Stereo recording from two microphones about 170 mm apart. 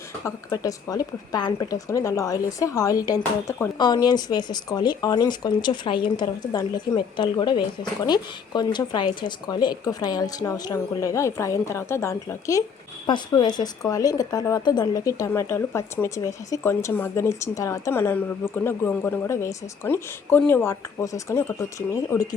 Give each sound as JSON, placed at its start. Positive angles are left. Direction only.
{"t": 0.3, "sound": "a woman's voice", "side_deg": 20}